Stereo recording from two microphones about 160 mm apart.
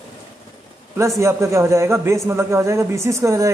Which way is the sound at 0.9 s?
15° right (ahead or behind).